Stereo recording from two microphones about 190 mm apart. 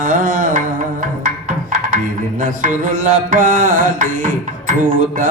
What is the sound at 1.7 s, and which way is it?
Music, 45° right (ahead or behind).